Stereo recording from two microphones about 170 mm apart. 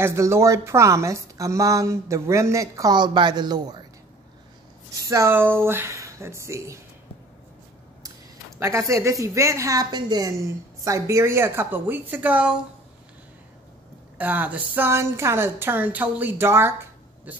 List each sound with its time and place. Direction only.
0.0 s a woman's voice: 15° right (ahead or behind)
4.9 s speech: 20° right (ahead or behind)
8.5 s a woman's voice: 15° right (ahead or behind)
14.1 s a woman's voice: 10° right (ahead or behind)